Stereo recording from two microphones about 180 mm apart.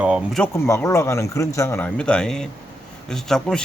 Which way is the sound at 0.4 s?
10° left (ahead or behind).